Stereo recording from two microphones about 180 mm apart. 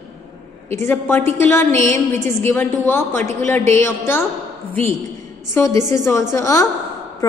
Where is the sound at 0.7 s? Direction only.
15° left (ahead or behind).